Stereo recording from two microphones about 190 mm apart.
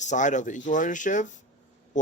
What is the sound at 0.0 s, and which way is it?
A man's voice, 40° left (ahead or behind).